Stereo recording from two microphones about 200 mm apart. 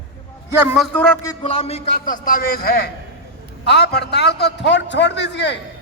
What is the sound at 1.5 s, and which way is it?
Speech, 30° left (ahead or behind).